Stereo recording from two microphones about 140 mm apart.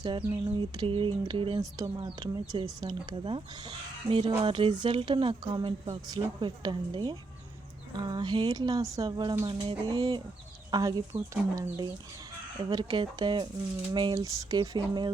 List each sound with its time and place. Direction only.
0.0 s speech: 35° right (ahead or behind)